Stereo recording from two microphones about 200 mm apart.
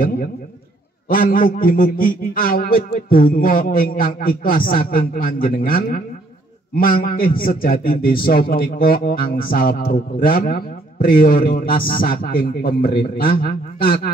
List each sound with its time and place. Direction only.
1.0 s a man's voice: 45° left (ahead or behind)